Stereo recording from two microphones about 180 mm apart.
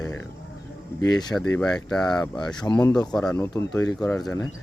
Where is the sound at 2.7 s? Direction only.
15° left (ahead or behind).